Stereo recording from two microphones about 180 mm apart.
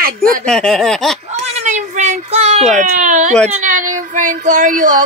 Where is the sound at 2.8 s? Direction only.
45° right (ahead or behind).